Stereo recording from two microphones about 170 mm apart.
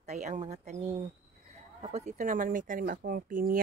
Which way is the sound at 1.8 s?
40° right (ahead or behind).